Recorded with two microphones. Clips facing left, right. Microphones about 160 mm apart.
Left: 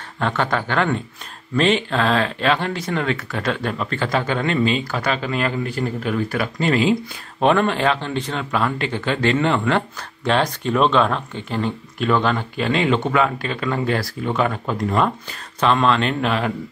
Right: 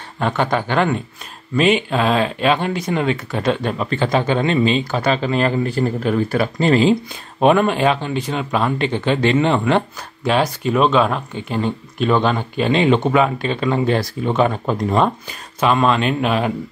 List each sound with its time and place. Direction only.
0.2 s speech: 15° right (ahead or behind); by 7.0 s 30° right (ahead or behind)
7.3 s speech: 15° right (ahead or behind)
10.2 s speech: 10° right (ahead or behind)
15.6 s speech: 10° right (ahead or behind)